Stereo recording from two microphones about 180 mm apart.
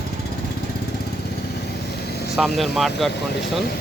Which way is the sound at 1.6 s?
65° left (ahead or behind).